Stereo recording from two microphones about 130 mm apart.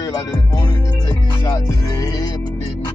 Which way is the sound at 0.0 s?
30° left (ahead or behind).